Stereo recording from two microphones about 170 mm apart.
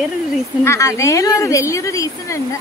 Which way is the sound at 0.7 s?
20° left (ahead or behind).